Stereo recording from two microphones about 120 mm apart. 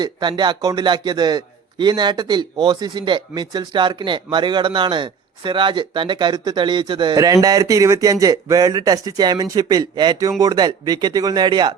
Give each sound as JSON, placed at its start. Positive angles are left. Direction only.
{"t": 0.0, "sound": "a man's voice", "side_deg": -40}
{"t": 7.4, "sound": "a man's voice", "side_deg": -30}